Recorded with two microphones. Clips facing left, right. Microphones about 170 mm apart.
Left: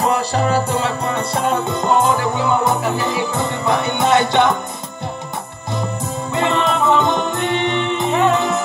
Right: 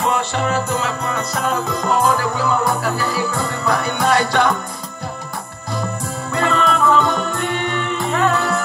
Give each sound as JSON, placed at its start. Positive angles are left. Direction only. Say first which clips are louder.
{"t": 0.0, "sound": "music", "louder": "left 2 dB", "side_deg": 35}
{"t": 6.3, "sound": "music", "louder": "even", "side_deg": 20}